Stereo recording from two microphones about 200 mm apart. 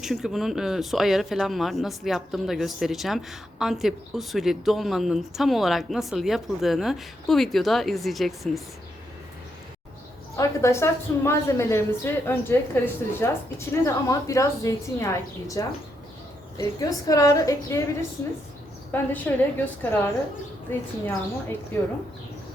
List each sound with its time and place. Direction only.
0.0 s speech: centre (ahead or behind)
10.3 s a woman's voice: 15° left (ahead or behind)
18.9 s a woman's voice: 10° left (ahead or behind)